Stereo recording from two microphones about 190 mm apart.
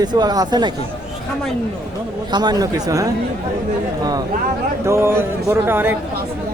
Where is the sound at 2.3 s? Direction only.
20° right (ahead or behind).